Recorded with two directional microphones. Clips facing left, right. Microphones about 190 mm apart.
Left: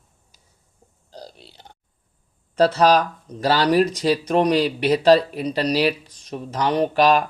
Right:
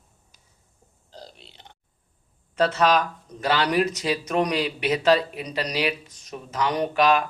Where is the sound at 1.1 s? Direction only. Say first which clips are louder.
Left 4 dB; 40° left (ahead or behind).